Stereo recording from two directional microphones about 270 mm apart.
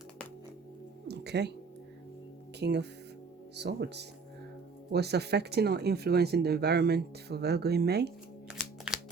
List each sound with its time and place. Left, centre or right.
1.0 s music: right
2.6 s speech: right
8.4 s music: centre